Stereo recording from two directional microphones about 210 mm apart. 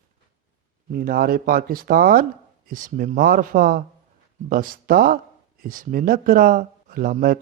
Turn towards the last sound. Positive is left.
turn(degrees=-45)  # may be behind; listen again after turning